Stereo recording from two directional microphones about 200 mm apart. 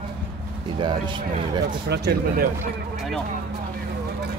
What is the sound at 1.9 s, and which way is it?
Speech, 55° right (ahead or behind).